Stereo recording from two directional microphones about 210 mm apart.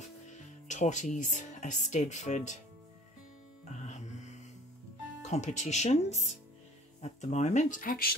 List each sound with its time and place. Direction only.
0.0 s speech: 35° left (ahead or behind)
3.7 s music: 35° left (ahead or behind)
5.2 s speech: 35° left (ahead or behind)